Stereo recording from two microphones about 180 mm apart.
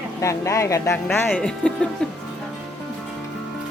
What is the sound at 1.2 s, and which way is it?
Speech, 5° left (ahead or behind).